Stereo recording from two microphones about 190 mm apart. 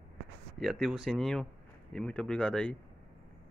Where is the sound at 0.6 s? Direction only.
Centre (ahead or behind).